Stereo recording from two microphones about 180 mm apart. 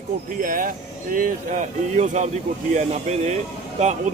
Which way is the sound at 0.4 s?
50° right (ahead or behind).